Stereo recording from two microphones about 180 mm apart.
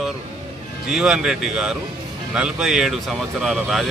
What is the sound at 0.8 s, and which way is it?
Speech, 5° right (ahead or behind).